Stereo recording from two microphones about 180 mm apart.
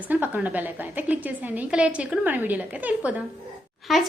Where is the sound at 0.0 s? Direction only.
10° right (ahead or behind).